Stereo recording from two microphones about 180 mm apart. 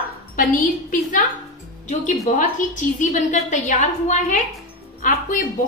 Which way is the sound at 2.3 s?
45° left (ahead or behind).